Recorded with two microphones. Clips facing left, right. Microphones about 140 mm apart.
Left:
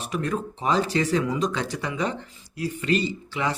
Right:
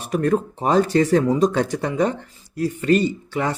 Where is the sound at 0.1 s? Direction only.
50° right (ahead or behind).